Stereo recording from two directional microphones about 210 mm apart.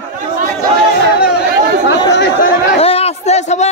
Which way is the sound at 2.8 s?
30° left (ahead or behind).